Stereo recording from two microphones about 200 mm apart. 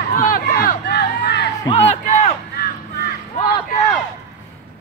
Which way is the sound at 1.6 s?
35° left (ahead or behind).